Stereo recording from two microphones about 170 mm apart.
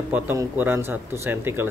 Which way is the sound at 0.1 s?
15° right (ahead or behind).